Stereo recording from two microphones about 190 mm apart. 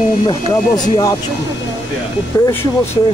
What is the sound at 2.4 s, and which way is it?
Speech, 10° left (ahead or behind).